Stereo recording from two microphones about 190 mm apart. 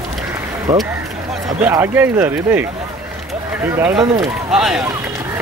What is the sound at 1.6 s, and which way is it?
Speech, 10° right (ahead or behind).